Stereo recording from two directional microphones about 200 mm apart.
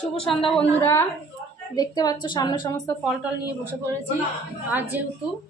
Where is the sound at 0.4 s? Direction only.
5° left (ahead or behind); by 2.8 s 20° left (ahead or behind).